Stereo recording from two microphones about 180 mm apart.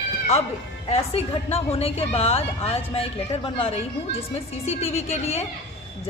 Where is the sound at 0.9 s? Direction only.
35° left (ahead or behind).